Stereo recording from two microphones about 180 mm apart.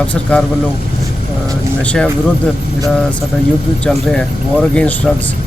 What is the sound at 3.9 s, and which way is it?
Speech, 5° left (ahead or behind).